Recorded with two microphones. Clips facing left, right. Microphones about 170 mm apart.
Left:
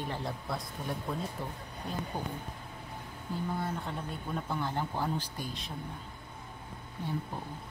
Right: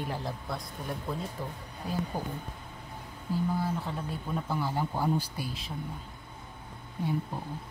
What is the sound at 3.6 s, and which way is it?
Speech, centre (ahead or behind).